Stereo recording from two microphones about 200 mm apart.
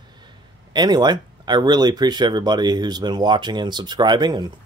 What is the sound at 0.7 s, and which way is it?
Speech, 20° right (ahead or behind).